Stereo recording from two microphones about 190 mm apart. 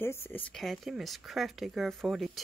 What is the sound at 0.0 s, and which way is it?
Speech, 10° left (ahead or behind).